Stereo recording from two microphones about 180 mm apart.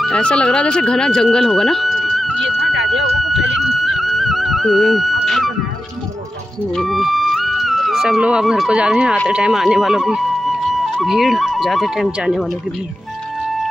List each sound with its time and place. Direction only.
0.0 s speech: 5° left (ahead or behind)
2.6 s a sound: 75° right (ahead or behind)
3.5 s music: centre (ahead or behind)
6.7 s speech: centre (ahead or behind)